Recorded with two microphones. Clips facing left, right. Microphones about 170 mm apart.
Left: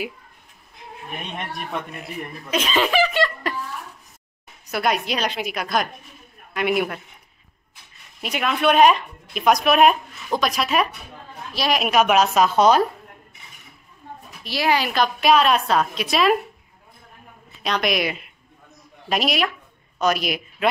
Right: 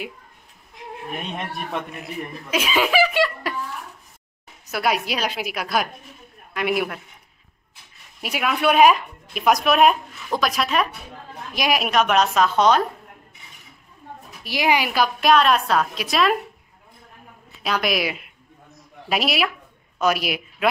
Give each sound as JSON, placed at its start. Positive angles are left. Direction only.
{"t": 1.3, "sound": "speech", "side_deg": 0}
{"t": 4.6, "sound": "speech", "side_deg": -5}
{"t": 8.2, "sound": "speech", "side_deg": -5}
{"t": 11.5, "sound": "a woman's voice", "side_deg": -15}
{"t": 11.8, "sound": "a woman's voice", "side_deg": 5}
{"t": 14.4, "sound": "speech", "side_deg": -15}
{"t": 17.6, "sound": "speech", "side_deg": -5}